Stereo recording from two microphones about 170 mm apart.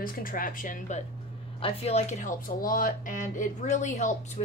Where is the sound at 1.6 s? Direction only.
40° left (ahead or behind).